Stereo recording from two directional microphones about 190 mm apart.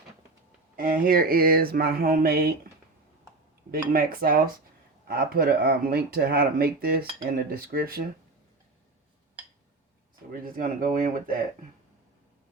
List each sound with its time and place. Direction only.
0.8 s cutlery: 50° right (ahead or behind)
3.7 s cutlery: 50° right (ahead or behind)
10.4 s cutlery: 45° right (ahead or behind)